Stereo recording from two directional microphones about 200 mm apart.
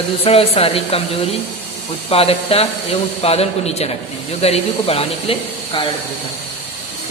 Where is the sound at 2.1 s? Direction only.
30° left (ahead or behind).